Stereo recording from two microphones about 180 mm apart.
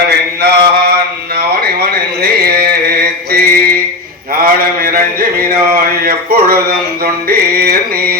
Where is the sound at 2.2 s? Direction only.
60° right (ahead or behind).